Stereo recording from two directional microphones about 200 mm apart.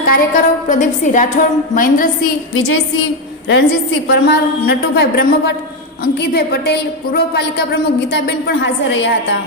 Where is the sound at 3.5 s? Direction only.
60° left (ahead or behind).